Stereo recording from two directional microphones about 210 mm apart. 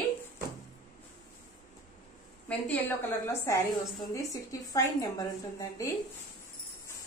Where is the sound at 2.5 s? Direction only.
10° left (ahead or behind).